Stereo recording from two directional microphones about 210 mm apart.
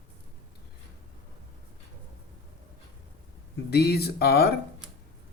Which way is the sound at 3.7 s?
50° left (ahead or behind).